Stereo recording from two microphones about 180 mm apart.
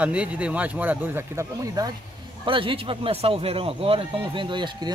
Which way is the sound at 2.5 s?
30° right (ahead or behind).